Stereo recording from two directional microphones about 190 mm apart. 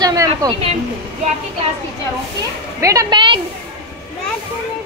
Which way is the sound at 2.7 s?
15° right (ahead or behind).